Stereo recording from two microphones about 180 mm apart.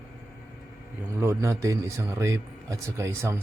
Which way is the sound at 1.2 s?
15° right (ahead or behind).